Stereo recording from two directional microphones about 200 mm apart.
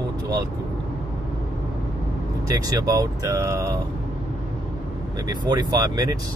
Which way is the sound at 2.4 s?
15° right (ahead or behind).